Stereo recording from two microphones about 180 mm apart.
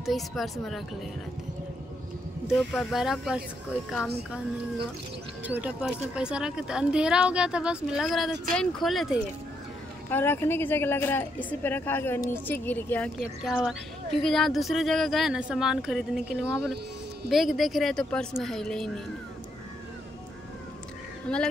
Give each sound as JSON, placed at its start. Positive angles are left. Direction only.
{"t": 0.0, "sound": "a woman's voice", "side_deg": 0}
{"t": 2.4, "sound": "a woman's voice", "side_deg": 0}
{"t": 5.4, "sound": "a woman's voice", "side_deg": -10}
{"t": 10.0, "sound": "speech", "side_deg": 10}
{"t": 13.2, "sound": "a woman's voice", "side_deg": 0}